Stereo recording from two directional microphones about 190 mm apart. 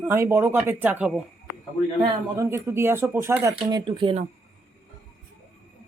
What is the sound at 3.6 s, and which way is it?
Speech, 25° right (ahead or behind).